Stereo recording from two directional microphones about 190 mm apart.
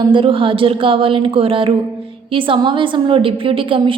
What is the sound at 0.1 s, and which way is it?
A woman's voice, 25° right (ahead or behind).